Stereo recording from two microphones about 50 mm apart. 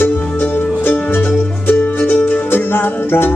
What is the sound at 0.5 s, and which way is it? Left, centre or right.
Music, left.